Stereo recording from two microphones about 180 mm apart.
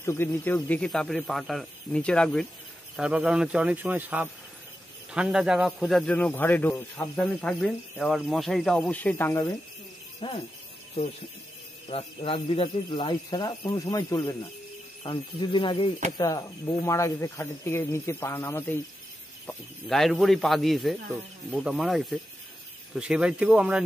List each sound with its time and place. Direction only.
0.0 s speech: 15° left (ahead or behind)
3.0 s speech: 5° right (ahead or behind); by 9.4 s 10° left (ahead or behind)
11.9 s speech: 30° left (ahead or behind); by 18.8 s 10° left (ahead or behind)
19.4 s speech: centre (ahead or behind)